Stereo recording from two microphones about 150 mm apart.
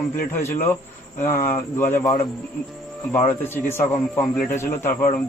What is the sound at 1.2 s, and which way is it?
Speech, 20° left (ahead or behind).